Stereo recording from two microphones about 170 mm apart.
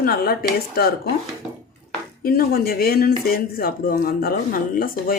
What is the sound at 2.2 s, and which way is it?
Speech, 60° left (ahead or behind).